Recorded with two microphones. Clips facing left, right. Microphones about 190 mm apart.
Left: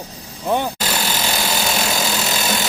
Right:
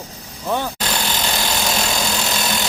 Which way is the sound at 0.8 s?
5° left (ahead or behind).